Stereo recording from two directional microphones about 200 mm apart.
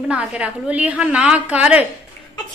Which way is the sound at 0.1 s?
5° right (ahead or behind).